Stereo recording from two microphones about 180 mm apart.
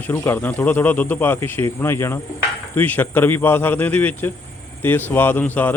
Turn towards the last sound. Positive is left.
turn(degrees=10)  # may be behind; listen again after turning